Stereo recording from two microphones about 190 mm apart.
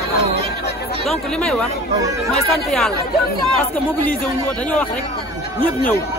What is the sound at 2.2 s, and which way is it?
Speech, 5° left (ahead or behind).